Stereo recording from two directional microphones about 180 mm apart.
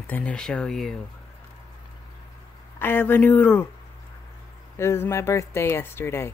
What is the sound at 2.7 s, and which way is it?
Speech, 10° left (ahead or behind).